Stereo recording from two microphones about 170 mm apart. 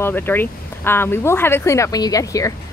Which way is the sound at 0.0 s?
15° left (ahead or behind).